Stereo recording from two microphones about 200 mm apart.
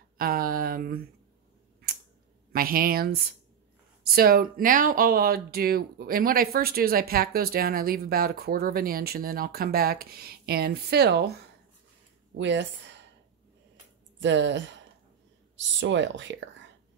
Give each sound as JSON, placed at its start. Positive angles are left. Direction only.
{"t": 0.2, "sound": "speech", "side_deg": -45}
{"t": 2.5, "sound": "speech", "side_deg": -45}
{"t": 12.4, "sound": "speech", "side_deg": -65}
{"t": 14.2, "sound": "speech", "side_deg": -65}